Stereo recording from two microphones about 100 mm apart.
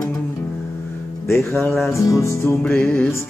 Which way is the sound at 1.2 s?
25° left (ahead or behind).